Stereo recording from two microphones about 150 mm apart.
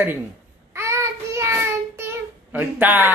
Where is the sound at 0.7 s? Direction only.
20° right (ahead or behind).